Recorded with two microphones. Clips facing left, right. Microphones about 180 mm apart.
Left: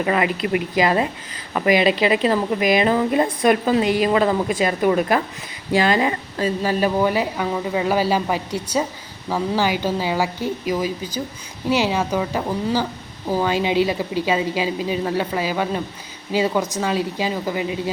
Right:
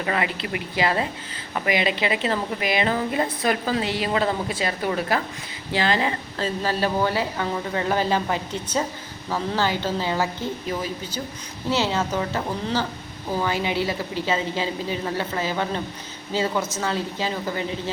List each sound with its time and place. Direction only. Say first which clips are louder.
0.0 s speech: left 5 dB; 25° left (ahead or behind)
2.0 s a woman's voice: left 6 dB; 20° left (ahead or behind)